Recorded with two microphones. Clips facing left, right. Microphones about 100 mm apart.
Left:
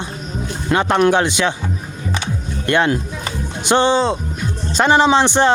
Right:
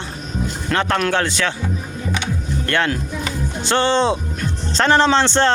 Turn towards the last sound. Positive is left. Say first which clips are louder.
# left 2 dB
turn(degrees=15)  # may be behind; listen again after turning